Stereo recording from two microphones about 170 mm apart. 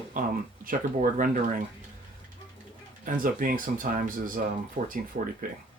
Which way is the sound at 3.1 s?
55° right (ahead or behind).